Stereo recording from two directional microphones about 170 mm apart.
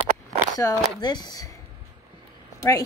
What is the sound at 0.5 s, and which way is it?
Speech, 25° left (ahead or behind).